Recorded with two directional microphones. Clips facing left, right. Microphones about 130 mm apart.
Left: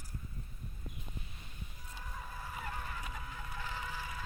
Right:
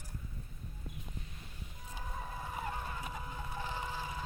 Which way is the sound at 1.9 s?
25° right (ahead or behind).